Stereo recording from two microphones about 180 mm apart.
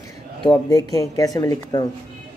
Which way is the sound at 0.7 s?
20° left (ahead or behind).